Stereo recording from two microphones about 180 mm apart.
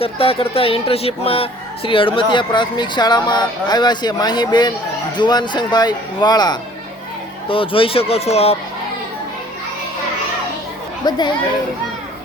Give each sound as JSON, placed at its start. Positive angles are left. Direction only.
{"t": 0.0, "sound": "speech", "side_deg": 30}
{"t": 11.1, "sound": "speech", "side_deg": 25}